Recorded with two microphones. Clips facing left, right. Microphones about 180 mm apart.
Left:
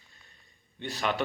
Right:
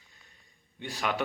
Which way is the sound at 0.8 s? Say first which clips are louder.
Left 2 dB; 10° right (ahead or behind).